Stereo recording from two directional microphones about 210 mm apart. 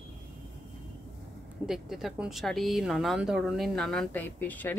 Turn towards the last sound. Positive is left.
turn(degrees=10)  # may be behind; listen again after turning